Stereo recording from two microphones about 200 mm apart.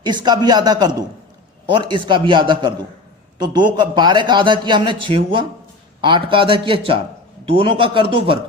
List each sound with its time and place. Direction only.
0.0 s a man's voice: 20° right (ahead or behind)